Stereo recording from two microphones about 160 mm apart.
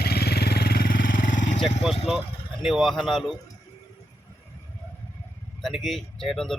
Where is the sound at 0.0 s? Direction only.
85° left; by 1.5 s 55° left (ahead or behind).